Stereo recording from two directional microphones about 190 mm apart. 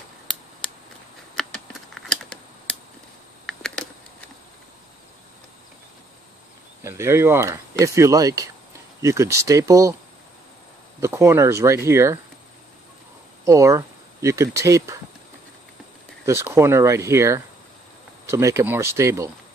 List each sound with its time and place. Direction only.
1.3 s typing: centre (ahead or behind)
3.4 s a sound: 5° left (ahead or behind)
6.8 s speech: 15° right (ahead or behind)
11.0 s speech: 15° right (ahead or behind)
13.5 s speech: 15° right (ahead or behind)
16.3 s speech: 15° right (ahead or behind)